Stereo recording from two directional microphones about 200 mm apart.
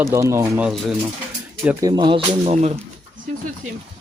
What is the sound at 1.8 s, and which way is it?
Speech, 25° right (ahead or behind).